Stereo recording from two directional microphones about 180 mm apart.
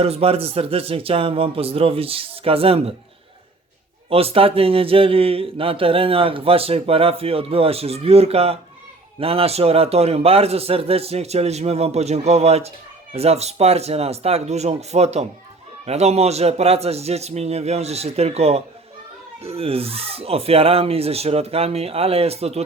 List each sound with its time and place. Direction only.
0.0 s mantra: 35° right (ahead or behind)
4.1 s mantra: 35° right (ahead or behind)